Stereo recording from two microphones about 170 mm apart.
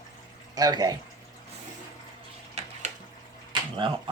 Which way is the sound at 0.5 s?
25° right (ahead or behind).